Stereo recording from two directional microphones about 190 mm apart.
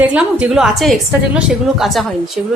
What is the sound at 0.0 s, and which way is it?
A woman's voice, 5° right (ahead or behind).